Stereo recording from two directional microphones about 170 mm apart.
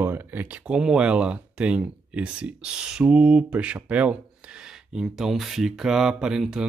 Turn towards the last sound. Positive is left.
turn(degrees=-5)  # may be behind; listen again after turning